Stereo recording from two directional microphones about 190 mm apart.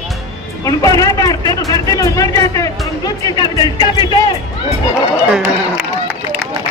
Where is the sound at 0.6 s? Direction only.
20° left (ahead or behind).